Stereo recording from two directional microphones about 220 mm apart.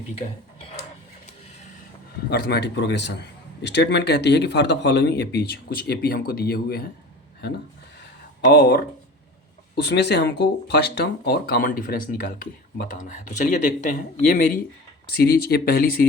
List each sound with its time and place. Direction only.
2.3 s speech: 45° left (ahead or behind)
8.4 s speech: 45° left (ahead or behind)